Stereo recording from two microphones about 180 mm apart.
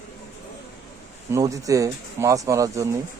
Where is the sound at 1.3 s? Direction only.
20° right (ahead or behind).